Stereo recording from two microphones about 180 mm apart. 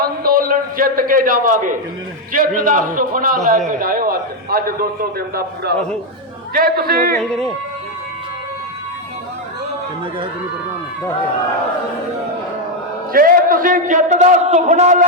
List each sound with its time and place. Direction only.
0.0 s a sound: 55° right (ahead or behind)
2.3 s a man's voice: 50° right (ahead or behind)
7.2 s speech: centre (ahead or behind)
13.1 s a man's voice: 55° right (ahead or behind)